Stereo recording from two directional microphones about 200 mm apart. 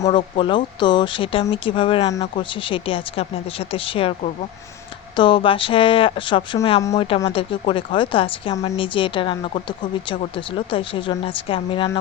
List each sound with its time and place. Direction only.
0.0 s speech: 25° left (ahead or behind)